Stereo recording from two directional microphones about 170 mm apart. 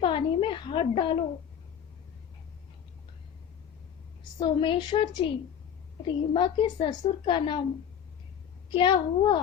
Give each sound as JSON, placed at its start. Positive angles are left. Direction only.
{"t": 0.0, "sound": "a sound", "side_deg": 30}
{"t": 4.4, "sound": "a woman's voice", "side_deg": 30}
{"t": 8.7, "sound": "a woman's voice", "side_deg": 30}